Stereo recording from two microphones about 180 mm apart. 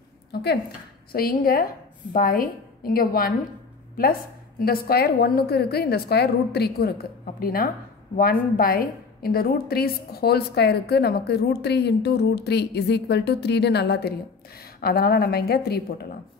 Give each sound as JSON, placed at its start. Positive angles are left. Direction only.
{"t": 0.3, "sound": "a woman's voice", "side_deg": 65}
{"t": 4.6, "sound": "a woman's voice", "side_deg": 55}